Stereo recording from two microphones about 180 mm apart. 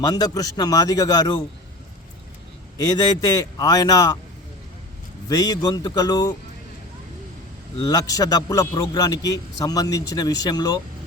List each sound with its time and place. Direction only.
0.0 s a man's voice: 20° left (ahead or behind)
2.7 s a man's voice: 20° left (ahead or behind)
5.3 s a man's voice: 20° left (ahead or behind)
7.8 s a man's voice: 20° left (ahead or behind)